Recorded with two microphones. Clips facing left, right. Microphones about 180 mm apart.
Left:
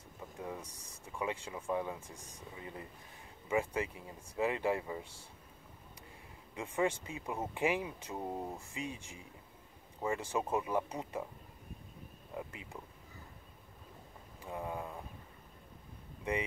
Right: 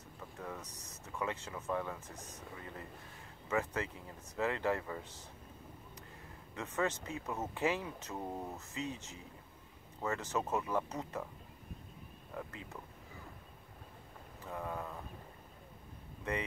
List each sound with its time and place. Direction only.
0.4 s speech: 15° left (ahead or behind)
6.5 s speech: 15° left (ahead or behind)
12.3 s speech: 15° left (ahead or behind)
14.4 s speech: 20° left (ahead or behind)
16.3 s speech: 15° left (ahead or behind)